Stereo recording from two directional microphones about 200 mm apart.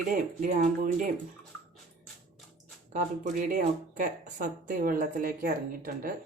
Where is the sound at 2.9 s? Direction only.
45° right (ahead or behind).